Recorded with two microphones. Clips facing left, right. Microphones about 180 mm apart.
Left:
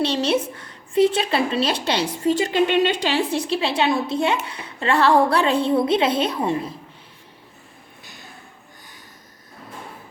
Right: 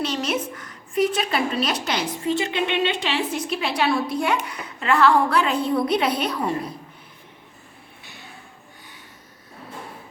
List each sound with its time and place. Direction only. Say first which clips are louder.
0.0 s a woman's voice: left 4 dB; 30° left (ahead or behind)